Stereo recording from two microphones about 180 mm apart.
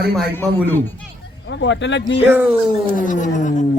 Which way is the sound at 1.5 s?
85° left.